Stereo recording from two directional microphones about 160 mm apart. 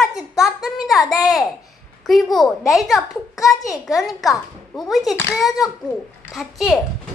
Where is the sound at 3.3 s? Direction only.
20° left (ahead or behind).